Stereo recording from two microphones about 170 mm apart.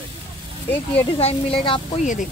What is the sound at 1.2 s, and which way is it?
Speech, 35° left (ahead or behind).